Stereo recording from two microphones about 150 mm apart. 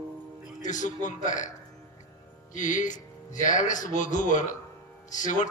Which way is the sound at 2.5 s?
60° left (ahead or behind).